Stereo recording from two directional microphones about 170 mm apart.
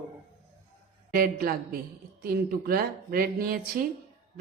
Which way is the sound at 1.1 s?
60° right (ahead or behind).